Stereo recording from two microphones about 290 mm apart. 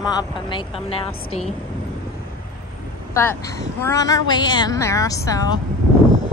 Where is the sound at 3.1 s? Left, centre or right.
Centre.